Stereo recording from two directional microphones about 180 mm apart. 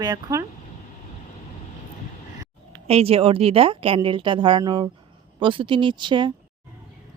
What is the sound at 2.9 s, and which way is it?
Speech, 35° right (ahead or behind).